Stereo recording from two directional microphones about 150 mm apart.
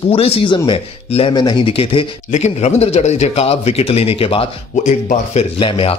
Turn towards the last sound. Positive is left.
turn(degrees=35)  # may be behind; listen again after turning